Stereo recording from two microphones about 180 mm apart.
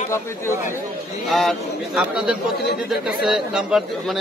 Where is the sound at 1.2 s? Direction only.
Centre (ahead or behind).